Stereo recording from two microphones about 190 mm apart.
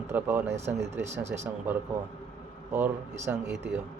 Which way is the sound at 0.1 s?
10° right (ahead or behind).